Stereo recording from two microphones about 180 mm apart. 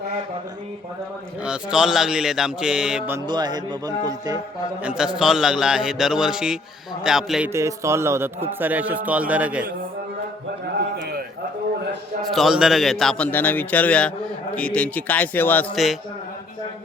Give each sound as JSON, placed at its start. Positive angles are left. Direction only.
{"t": 1.5, "sound": "a man's voice", "side_deg": -5}
{"t": 3.2, "sound": "music", "side_deg": -25}
{"t": 4.8, "sound": "a man's voice", "side_deg": -5}
{"t": 7.5, "sound": "a man's voice", "side_deg": -15}
{"t": 12.3, "sound": "a man's voice", "side_deg": 0}
{"t": 15.7, "sound": "a man's voice", "side_deg": 0}